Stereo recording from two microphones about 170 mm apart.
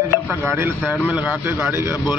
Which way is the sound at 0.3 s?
15° right (ahead or behind).